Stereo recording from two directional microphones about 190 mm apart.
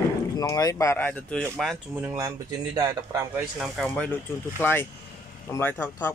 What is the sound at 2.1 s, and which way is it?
Speech, 20° right (ahead or behind).